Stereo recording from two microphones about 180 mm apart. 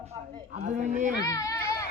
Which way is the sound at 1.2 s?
20° left (ahead or behind).